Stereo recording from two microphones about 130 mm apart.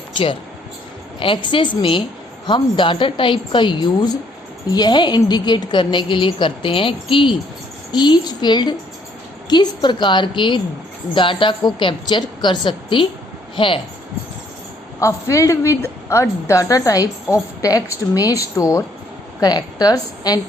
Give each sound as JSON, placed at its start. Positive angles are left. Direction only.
{"t": 1.2, "sound": "a woman's voice", "side_deg": 40}
{"t": 14.9, "sound": "a woman's voice", "side_deg": 25}